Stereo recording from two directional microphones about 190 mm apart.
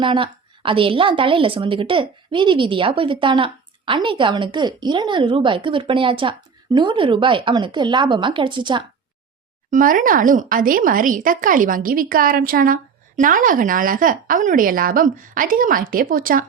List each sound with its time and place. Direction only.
0.0 s a woman's voice: 25° right (ahead or behind)
9.6 s speech: 45° right (ahead or behind)